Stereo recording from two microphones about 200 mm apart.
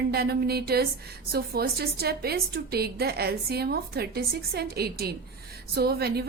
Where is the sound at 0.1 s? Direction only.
50° right (ahead or behind).